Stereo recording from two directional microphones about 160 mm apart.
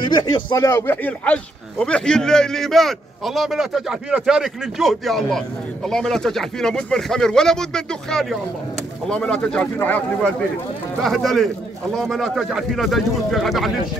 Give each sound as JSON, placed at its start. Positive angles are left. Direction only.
{"t": 0.1, "sound": "speech", "side_deg": 25}
{"t": 0.5, "sound": "a man's voice", "side_deg": 15}